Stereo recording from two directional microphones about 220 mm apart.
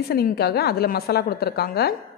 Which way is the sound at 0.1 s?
45° left (ahead or behind).